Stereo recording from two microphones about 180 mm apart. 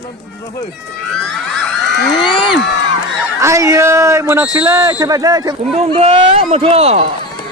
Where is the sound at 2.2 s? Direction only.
25° left (ahead or behind).